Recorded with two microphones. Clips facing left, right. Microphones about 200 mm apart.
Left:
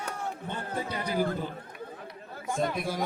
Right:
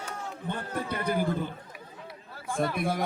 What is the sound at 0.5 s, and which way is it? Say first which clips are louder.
Speech: right 3 dB; 55° right (ahead or behind).